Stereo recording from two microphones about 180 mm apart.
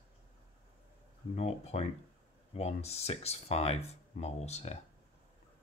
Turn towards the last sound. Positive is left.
turn(degrees=35)  # may be behind; listen again after turning